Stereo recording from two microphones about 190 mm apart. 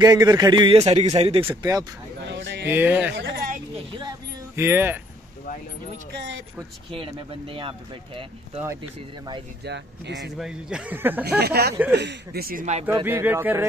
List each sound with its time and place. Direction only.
0.0 s speech: 20° right (ahead or behind)
1.5 s speech: 20° right (ahead or behind)
3.2 s speech: 60° right (ahead or behind)
4.6 s speech: 10° right (ahead or behind)
6.1 s speech: 75° right (ahead or behind)
6.9 s speech: 30° right (ahead or behind)
9.7 s speech: 65° right (ahead or behind)
10.3 s speech: 5° right (ahead or behind)
11.2 s speech: 55° right (ahead or behind); by 12.8 s 40° right (ahead or behind)
13.0 s speech: 10° right (ahead or behind)